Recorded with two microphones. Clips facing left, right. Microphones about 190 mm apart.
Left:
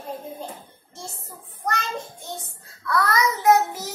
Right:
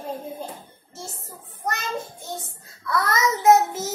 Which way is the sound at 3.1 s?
25° right (ahead or behind).